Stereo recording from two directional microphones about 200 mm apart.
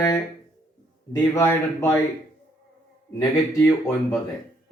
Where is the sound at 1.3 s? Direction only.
15° left (ahead or behind).